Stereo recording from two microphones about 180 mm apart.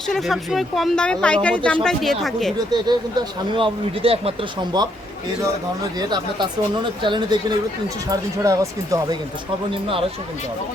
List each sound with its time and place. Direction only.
0.1 s speech: centre (ahead or behind)
2.7 s speech: 25° right (ahead or behind)
6.0 s speech: 25° right (ahead or behind)